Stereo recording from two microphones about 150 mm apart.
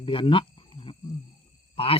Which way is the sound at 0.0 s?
35° left (ahead or behind).